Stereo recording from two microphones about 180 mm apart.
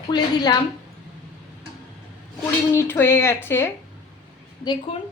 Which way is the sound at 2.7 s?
15° left (ahead or behind).